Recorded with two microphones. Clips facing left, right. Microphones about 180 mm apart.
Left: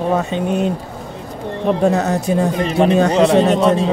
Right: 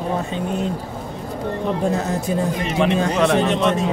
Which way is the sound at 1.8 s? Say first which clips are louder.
Left 6 dB; 75° left (ahead or behind).